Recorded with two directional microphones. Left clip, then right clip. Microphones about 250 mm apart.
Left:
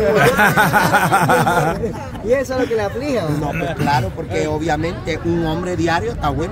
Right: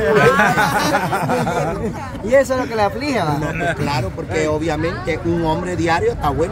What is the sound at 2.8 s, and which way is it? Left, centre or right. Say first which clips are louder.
Speech: right 2 dB; right.